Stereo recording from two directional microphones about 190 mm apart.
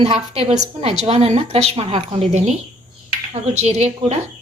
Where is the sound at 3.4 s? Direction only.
35° right (ahead or behind).